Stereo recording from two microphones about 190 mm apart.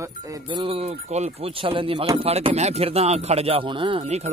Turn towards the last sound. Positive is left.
turn(degrees=-35)  # may be behind; listen again after turning